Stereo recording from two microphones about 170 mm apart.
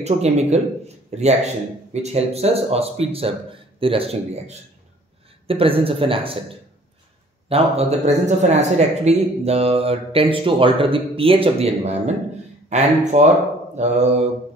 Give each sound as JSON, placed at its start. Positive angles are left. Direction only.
{"t": 0.0, "sound": "speech", "side_deg": -40}
{"t": 7.4, "sound": "a man's voice", "side_deg": -35}